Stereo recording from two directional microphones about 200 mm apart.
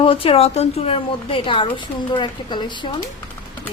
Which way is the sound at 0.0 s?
25° left (ahead or behind).